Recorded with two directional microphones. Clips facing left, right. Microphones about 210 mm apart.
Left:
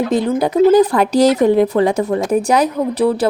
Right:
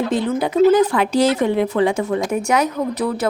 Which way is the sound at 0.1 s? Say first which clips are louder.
Left 4 dB; 40° left (ahead or behind).